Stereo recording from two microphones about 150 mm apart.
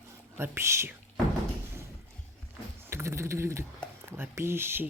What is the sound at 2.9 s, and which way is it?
Speech, 20° right (ahead or behind).